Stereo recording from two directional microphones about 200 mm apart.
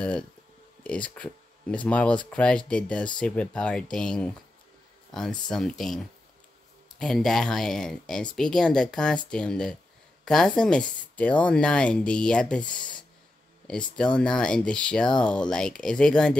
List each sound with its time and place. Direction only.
0.8 s speech: 5° left (ahead or behind)
5.5 s speech: centre (ahead or behind)
7.0 s speech: 5° left (ahead or behind)